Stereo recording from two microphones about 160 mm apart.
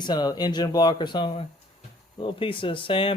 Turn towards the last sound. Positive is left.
turn(degrees=35)  # may be behind; listen again after turning